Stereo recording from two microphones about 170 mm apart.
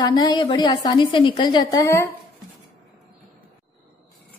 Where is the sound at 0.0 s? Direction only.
25° left (ahead or behind).